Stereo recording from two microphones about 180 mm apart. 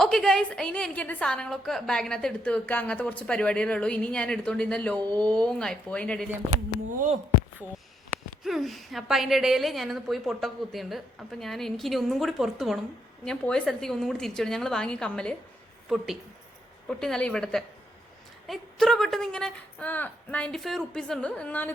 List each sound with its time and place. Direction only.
0.0 s a woman's voice: centre (ahead or behind)
4.9 s speech: 25° right (ahead or behind)
5.5 s a woman's voice: 5° left (ahead or behind)
8.4 s a woman's voice: centre (ahead or behind)
16.9 s a woman's voice: 5° left (ahead or behind)